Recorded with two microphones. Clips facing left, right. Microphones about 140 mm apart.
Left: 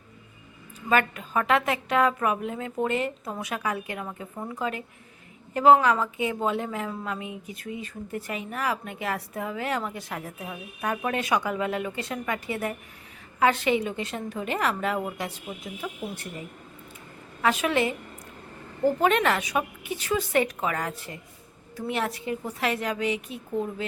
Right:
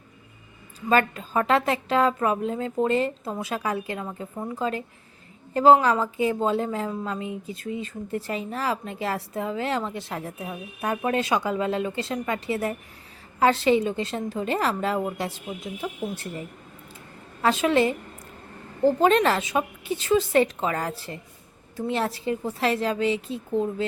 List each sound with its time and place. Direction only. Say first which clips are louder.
0.9 s a woman's voice: right 2 dB; 30° right (ahead or behind)
17.4 s a woman's voice: right 3 dB; 30° right (ahead or behind)